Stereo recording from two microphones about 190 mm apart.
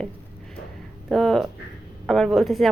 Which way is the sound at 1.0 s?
Centre (ahead or behind).